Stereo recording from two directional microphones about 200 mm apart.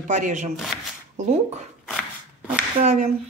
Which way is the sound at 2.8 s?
35° right (ahead or behind).